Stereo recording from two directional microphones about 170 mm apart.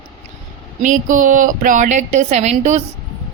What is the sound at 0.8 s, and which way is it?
A woman's voice, 50° right (ahead or behind).